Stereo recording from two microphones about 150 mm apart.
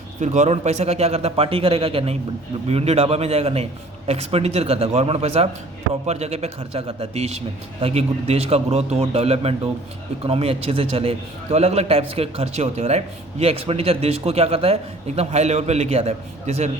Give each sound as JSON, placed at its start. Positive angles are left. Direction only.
{"t": 0.2, "sound": "a man's voice", "side_deg": -50}